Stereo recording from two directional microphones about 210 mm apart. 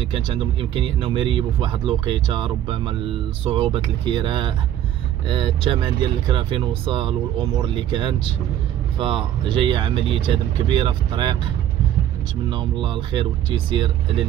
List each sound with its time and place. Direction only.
0.1 s speech: 25° right (ahead or behind)
12.4 s speech: 25° right (ahead or behind)